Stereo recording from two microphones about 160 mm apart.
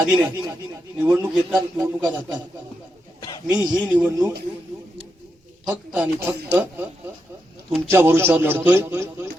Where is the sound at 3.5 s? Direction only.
10° right (ahead or behind).